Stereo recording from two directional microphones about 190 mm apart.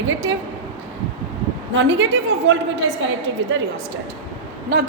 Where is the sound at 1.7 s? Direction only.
75° right (ahead or behind).